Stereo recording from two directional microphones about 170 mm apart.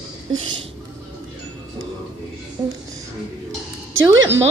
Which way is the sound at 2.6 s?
15° right (ahead or behind).